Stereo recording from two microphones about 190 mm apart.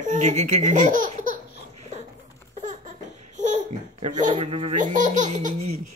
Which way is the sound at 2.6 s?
40° right (ahead or behind).